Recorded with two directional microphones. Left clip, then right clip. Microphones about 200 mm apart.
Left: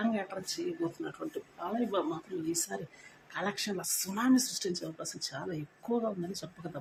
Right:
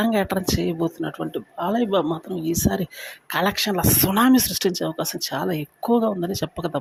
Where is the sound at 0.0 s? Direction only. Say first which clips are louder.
Right 13 dB; 45° right (ahead or behind).